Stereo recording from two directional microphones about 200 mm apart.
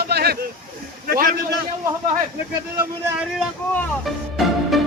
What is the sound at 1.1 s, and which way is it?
Speech, 50° right (ahead or behind).